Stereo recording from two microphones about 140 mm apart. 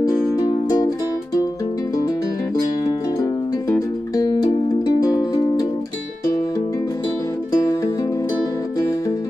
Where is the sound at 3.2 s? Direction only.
20° left (ahead or behind).